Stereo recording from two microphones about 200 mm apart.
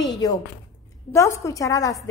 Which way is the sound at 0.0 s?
20° left (ahead or behind).